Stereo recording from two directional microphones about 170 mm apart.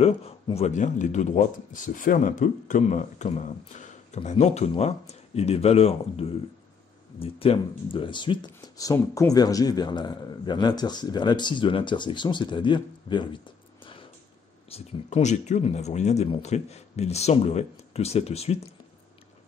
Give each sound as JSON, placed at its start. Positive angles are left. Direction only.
{"t": 0.0, "sound": "speech", "side_deg": 35}
{"t": 14.7, "sound": "speech", "side_deg": 35}